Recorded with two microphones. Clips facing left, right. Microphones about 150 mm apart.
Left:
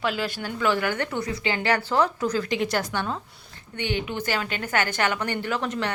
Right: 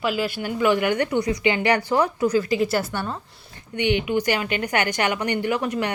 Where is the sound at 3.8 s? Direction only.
15° right (ahead or behind).